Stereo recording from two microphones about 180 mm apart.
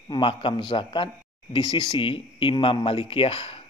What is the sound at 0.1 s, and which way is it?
Speech, 25° left (ahead or behind).